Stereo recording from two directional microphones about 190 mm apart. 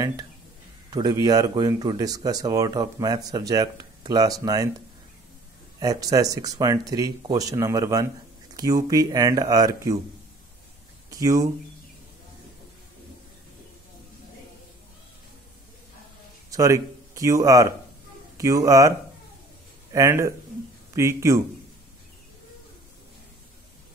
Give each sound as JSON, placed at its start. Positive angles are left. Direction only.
{"t": 0.0, "sound": "speech", "side_deg": -20}
{"t": 5.8, "sound": "speech", "side_deg": -20}
{"t": 11.1, "sound": "speech", "side_deg": -20}
{"t": 16.4, "sound": "speech", "side_deg": -15}